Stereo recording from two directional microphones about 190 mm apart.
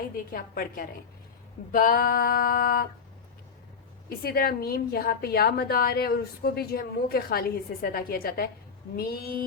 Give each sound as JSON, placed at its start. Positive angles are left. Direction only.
{"t": 0.3, "sound": "a woman's voice", "side_deg": 50}
{"t": 4.2, "sound": "a woman's voice", "side_deg": 50}